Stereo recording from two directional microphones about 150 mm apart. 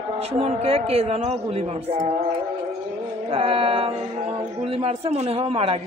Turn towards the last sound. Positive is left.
turn(degrees=-40)  # may be behind; listen again after turning